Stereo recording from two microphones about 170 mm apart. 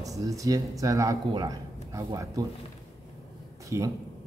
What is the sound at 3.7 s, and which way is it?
Speech, 15° right (ahead or behind).